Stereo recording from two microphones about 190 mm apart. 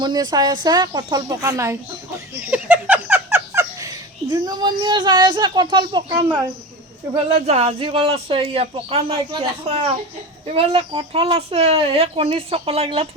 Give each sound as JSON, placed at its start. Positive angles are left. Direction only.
{"t": 0.0, "sound": "speech", "side_deg": -20}
{"t": 2.5, "sound": "a sound", "side_deg": -5}
{"t": 7.3, "sound": "speech", "side_deg": -35}